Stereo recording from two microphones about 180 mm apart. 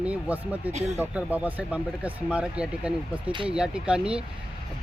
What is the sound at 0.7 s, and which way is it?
Speech, 40° right (ahead or behind).